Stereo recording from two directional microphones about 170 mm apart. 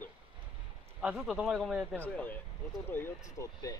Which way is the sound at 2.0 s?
10° left (ahead or behind).